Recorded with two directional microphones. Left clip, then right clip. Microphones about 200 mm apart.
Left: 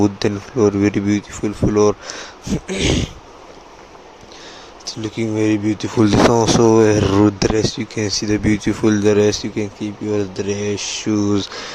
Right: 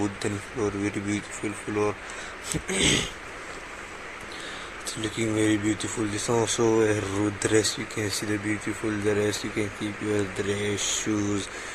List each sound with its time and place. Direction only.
0.0 s speech: 40° left (ahead or behind)
1.7 s speech: 55° left (ahead or behind)
2.6 s speech: 30° left (ahead or behind)
5.0 s speech: 35° left (ahead or behind)
6.0 s speech: 45° left (ahead or behind)
9.6 s speech: 30° left (ahead or behind)